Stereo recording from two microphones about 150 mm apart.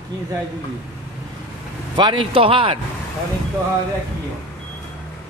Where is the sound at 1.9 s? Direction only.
30° right (ahead or behind).